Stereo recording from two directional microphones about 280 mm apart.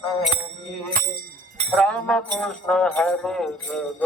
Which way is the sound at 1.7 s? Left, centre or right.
Centre.